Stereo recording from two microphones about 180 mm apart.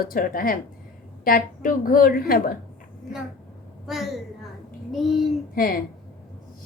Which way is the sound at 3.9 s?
Centre (ahead or behind).